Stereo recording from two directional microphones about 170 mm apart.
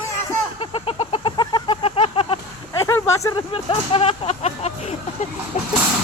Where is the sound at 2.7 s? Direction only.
15° left (ahead or behind).